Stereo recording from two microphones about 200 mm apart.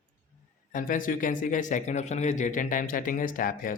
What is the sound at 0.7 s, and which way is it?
Speech, 40° left (ahead or behind).